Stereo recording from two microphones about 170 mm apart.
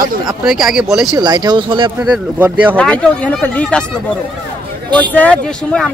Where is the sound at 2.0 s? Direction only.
10° right (ahead or behind).